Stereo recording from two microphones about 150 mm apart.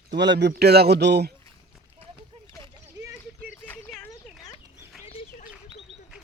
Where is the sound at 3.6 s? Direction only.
10° left (ahead or behind).